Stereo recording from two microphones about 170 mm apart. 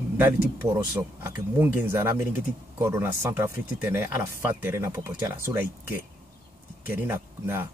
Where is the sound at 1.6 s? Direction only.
10° right (ahead or behind).